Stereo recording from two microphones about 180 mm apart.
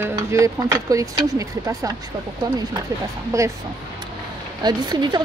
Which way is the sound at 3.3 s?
15° right (ahead or behind).